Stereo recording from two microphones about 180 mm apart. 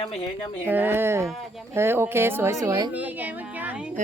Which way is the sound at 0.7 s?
10° right (ahead or behind).